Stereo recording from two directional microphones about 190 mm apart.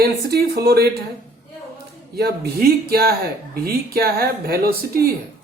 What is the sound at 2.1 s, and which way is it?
Speech, 55° right (ahead or behind).